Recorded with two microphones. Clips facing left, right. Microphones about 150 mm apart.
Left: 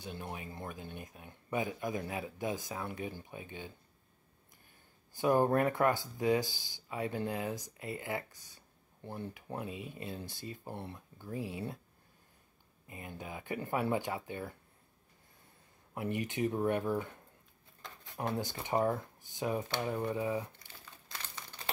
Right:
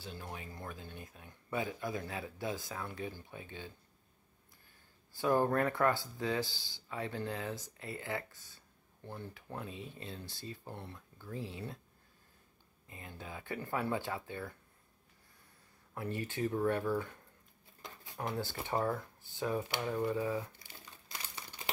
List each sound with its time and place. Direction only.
0.0 s speech: 20° left (ahead or behind)
5.1 s speech: 20° left (ahead or behind)
12.8 s speech: 15° left (ahead or behind)
15.9 s speech: 15° left (ahead or behind)
18.1 s speech: 20° left (ahead or behind)
20.5 s crumpling: 10° right (ahead or behind)